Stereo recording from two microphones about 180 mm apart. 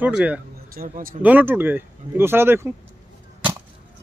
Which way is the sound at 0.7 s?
55° right (ahead or behind).